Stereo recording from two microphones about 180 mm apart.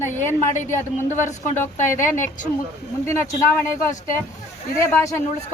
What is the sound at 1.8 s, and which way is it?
Speech, 45° left (ahead or behind).